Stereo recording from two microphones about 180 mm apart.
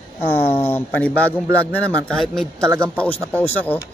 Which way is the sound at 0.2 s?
10° left (ahead or behind).